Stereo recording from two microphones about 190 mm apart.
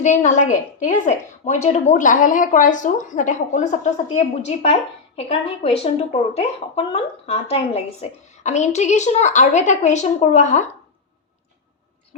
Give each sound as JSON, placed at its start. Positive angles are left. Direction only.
{"t": 0.0, "sound": "a woman's voice", "side_deg": 40}